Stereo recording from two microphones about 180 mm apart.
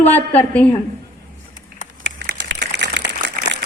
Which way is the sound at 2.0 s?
75° right (ahead or behind).